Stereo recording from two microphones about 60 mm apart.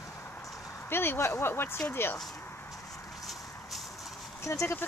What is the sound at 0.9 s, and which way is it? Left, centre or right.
Speech, left.